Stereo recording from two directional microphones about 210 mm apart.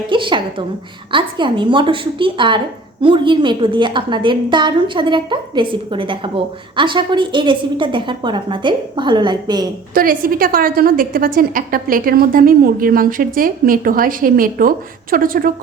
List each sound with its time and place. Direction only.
0.1 s a sound: 25° right (ahead or behind)
1.1 s a woman's voice: 25° right (ahead or behind)
9.9 s a woman's voice: 40° right (ahead or behind)